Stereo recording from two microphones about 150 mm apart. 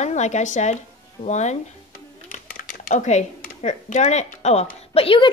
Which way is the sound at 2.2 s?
70° left (ahead or behind).